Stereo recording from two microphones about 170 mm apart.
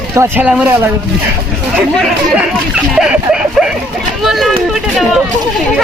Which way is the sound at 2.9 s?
5° right (ahead or behind).